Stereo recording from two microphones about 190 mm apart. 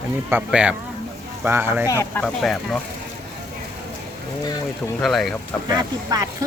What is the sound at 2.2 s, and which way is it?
Speech, centre (ahead or behind).